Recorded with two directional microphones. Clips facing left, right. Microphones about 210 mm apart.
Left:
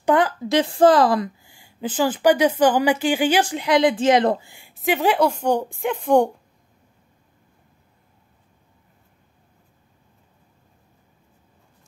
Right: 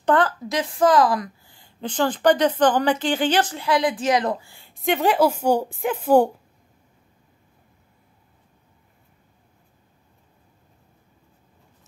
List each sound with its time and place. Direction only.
0.0 s a woman's voice: 10° left (ahead or behind)
0.5 s a woman's voice: 30° left (ahead or behind)
1.4 s a woman's voice: 10° left (ahead or behind); by 4.5 s 25° left (ahead or behind)
4.5 s a sound: 15° left (ahead or behind)
4.8 s a woman's voice: centre (ahead or behind)